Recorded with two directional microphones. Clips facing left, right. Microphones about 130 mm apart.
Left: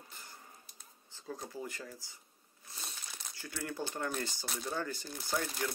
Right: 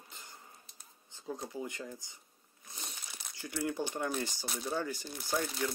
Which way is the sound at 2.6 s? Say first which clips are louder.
Right 1 dB; 20° right (ahead or behind).